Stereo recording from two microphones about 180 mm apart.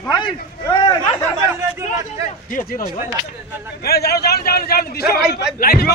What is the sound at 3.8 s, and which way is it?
A man's voice, 60° left (ahead or behind).